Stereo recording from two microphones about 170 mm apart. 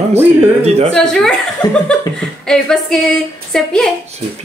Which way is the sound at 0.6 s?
40° right (ahead or behind).